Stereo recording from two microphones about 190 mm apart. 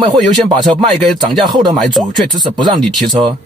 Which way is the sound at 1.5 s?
20° right (ahead or behind).